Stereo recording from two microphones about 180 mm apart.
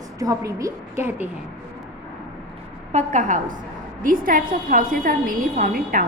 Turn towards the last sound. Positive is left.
turn(degrees=-50)  # may be behind; listen again after turning